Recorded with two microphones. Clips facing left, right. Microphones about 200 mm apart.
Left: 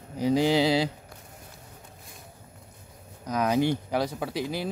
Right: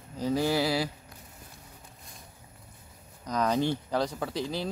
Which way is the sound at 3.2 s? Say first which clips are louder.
Left 3 dB; 5° left (ahead or behind).